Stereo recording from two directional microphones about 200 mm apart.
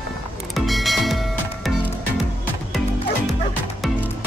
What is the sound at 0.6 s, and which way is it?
Music, centre (ahead or behind).